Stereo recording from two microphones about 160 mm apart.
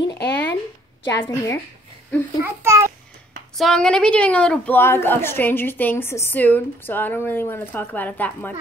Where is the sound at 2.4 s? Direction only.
15° right (ahead or behind).